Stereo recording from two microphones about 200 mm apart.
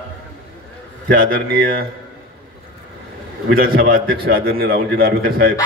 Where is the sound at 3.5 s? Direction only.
45° right (ahead or behind).